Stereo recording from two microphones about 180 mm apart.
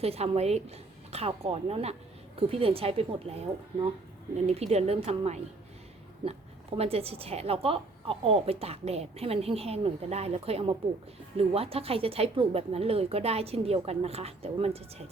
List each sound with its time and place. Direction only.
0.0 s a woman's voice: 35° right (ahead or behind)
6.7 s a woman's voice: 35° right (ahead or behind)